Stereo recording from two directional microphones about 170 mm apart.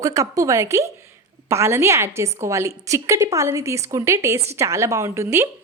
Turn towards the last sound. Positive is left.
turn(degrees=-15)  # may be behind; listen again after turning